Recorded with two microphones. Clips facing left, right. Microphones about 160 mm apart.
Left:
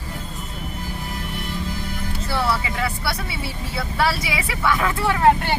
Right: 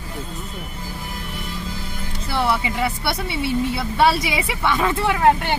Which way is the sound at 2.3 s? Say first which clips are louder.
Right 2 dB; 20° right (ahead or behind).